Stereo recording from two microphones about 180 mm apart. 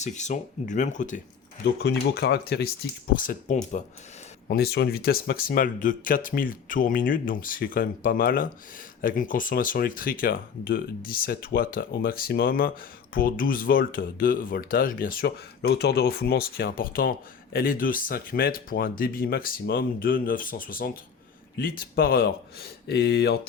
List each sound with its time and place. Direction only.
0.0 s speech: 40° left (ahead or behind)
1.6 s speech: 65° left (ahead or behind)
3.2 s speech: 45° left (ahead or behind)
4.4 s speech: 60° left (ahead or behind)